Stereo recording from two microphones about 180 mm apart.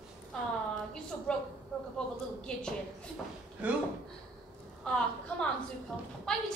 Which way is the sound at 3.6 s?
10° right (ahead or behind).